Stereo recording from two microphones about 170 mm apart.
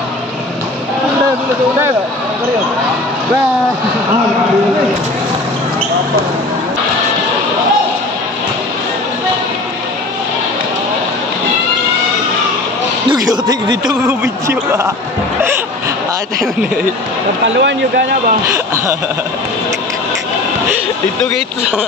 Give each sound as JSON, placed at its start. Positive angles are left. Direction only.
{"t": 13.1, "sound": "a sound", "side_deg": -20}
{"t": 13.8, "sound": "speech", "side_deg": -15}
{"t": 17.6, "sound": "speech", "side_deg": -90}